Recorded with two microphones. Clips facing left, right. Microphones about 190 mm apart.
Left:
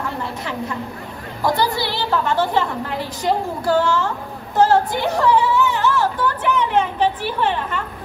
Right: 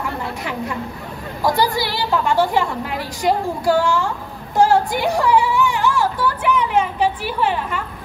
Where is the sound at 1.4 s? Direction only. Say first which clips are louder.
Right 1 dB; 10° right (ahead or behind).